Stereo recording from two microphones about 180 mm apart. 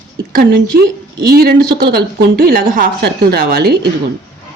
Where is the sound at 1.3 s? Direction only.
60° right (ahead or behind).